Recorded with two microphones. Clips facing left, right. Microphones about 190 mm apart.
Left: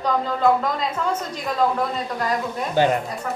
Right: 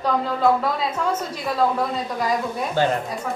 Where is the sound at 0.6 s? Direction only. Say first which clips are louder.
Right 1 dB; 5° right (ahead or behind).